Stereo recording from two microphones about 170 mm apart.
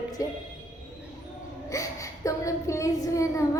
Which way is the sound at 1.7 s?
20° left (ahead or behind).